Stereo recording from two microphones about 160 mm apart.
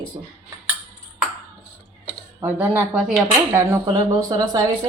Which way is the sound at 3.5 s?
20° right (ahead or behind).